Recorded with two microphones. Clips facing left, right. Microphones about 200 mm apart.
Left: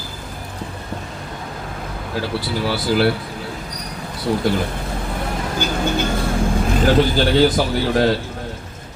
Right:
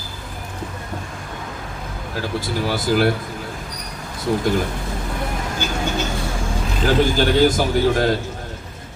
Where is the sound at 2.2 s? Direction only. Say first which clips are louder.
Even; 45° right (ahead or behind).